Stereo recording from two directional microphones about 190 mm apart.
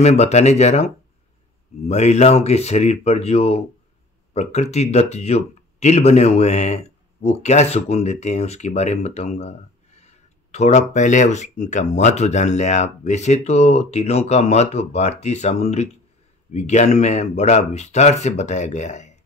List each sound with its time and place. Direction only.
0.0 s speech: 35° left (ahead or behind)
1.9 s speech: 35° left (ahead or behind)